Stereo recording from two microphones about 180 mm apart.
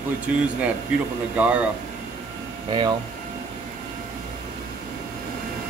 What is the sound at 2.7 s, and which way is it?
Speech, 25° right (ahead or behind).